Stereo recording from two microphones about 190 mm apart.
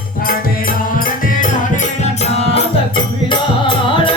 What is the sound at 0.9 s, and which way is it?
Music, 45° left (ahead or behind).